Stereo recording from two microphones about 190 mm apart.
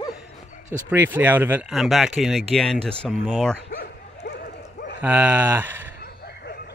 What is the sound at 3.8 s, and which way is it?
Bow-wow, 60° left (ahead or behind).